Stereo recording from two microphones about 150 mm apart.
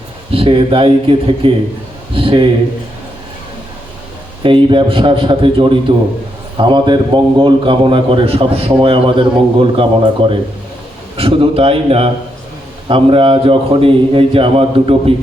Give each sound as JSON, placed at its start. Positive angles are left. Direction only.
{"t": 0.3, "sound": "a man's voice", "side_deg": -35}
{"t": 4.4, "sound": "a man's voice", "side_deg": -35}
{"t": 11.2, "sound": "a man's voice", "side_deg": -40}